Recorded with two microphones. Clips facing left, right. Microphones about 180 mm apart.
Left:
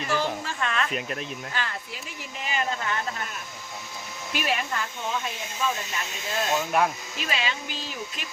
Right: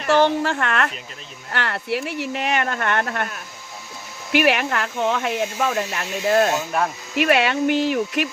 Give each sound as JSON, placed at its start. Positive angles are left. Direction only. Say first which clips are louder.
{"t": 0.0, "sound": "a woman's voice", "louder": "right 10 dB", "side_deg": -75}
{"t": 6.7, "sound": "speech", "louder": "right 1 dB", "side_deg": 5}
{"t": 7.2, "sound": "speech", "louder": "right 13 dB", "side_deg": -65}